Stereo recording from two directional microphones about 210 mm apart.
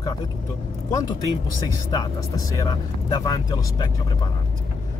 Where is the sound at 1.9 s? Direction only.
15° left (ahead or behind).